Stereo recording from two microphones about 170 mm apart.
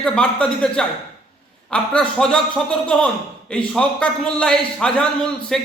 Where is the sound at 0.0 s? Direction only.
5° left (ahead or behind).